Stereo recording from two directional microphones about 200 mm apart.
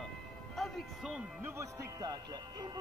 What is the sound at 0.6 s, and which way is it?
Music, centre (ahead or behind).